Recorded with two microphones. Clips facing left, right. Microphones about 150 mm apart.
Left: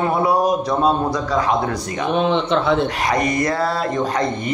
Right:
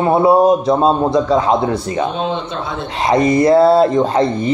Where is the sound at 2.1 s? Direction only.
70° left (ahead or behind).